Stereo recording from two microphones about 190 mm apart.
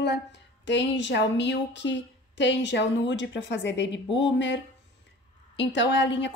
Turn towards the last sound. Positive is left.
turn(degrees=70)  # may be behind; listen again after turning